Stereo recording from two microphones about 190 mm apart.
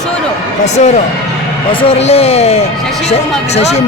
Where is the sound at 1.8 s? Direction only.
30° left (ahead or behind).